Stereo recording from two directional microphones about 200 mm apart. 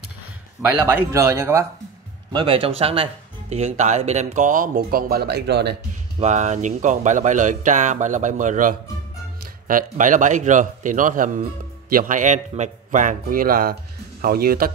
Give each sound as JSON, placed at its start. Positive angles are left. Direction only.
{"t": 0.8, "sound": "speech", "side_deg": -15}
{"t": 2.3, "sound": "speech", "side_deg": -25}
{"t": 6.1, "sound": "speech", "side_deg": -35}